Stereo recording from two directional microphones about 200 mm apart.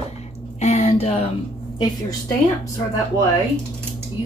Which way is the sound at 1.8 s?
20° left (ahead or behind).